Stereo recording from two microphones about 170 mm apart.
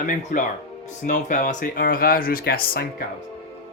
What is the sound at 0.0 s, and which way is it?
Speech, 50° left (ahead or behind).